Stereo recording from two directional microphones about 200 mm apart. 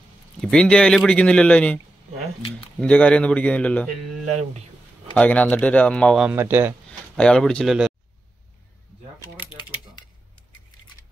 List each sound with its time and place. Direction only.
0.4 s speech: 5° left (ahead or behind)
2.8 s speech: 5° left (ahead or behind)
4.3 s speech: 35° right (ahead or behind)
5.1 s speech: 5° left (ahead or behind)
6.3 s speech: 10° right (ahead or behind)
6.9 s speech: 5° left (ahead or behind)
9.5 s typing: 25° left (ahead or behind)